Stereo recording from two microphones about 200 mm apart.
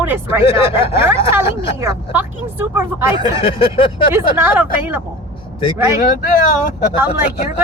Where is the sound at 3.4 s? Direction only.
25° left (ahead or behind).